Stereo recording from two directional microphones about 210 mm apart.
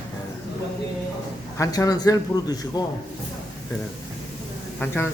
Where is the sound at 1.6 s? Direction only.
15° left (ahead or behind).